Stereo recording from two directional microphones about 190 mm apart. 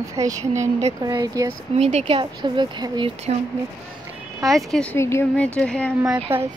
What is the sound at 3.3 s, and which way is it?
Speech, 35° right (ahead or behind).